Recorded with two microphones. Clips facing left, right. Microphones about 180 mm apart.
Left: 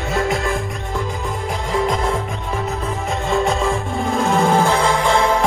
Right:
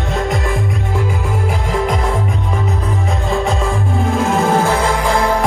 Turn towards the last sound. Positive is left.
turn(degrees=0)  # may be behind; listen again after turning